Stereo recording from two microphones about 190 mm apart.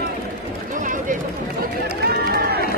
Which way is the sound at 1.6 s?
55° right (ahead or behind).